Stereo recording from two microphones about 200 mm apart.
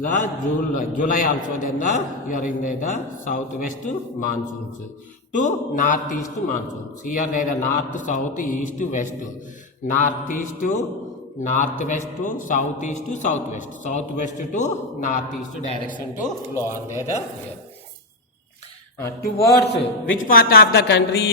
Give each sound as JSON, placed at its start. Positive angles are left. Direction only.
{"t": 0.0, "sound": "a man's voice", "side_deg": 40}
{"t": 5.4, "sound": "a man's voice", "side_deg": 40}
{"t": 19.2, "sound": "a man's voice", "side_deg": 55}
{"t": 20.2, "sound": "a woman's voice", "side_deg": 50}